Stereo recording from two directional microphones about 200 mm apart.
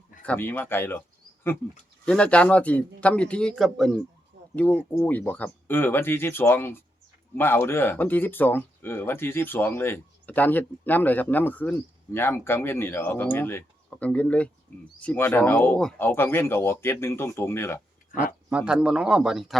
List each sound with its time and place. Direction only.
0.2 s speech: 10° left (ahead or behind)
2.0 s a man's voice: 5° left (ahead or behind)
4.3 s a sound: 55° right (ahead or behind)
4.9 s speech: 10° left (ahead or behind)
18.4 s a man's voice: 5° right (ahead or behind)